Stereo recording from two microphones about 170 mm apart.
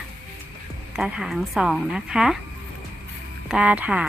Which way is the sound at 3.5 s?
5° right (ahead or behind).